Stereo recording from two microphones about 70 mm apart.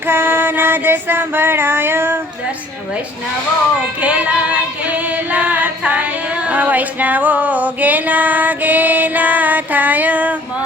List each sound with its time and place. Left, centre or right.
0.1 s child singing: right
4.0 s female singing: right
6.5 s music: right